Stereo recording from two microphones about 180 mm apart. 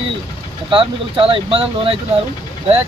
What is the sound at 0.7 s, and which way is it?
Speech, 30° right (ahead or behind).